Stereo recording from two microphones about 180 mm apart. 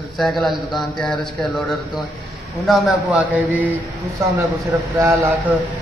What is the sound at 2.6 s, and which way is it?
Speech, centre (ahead or behind).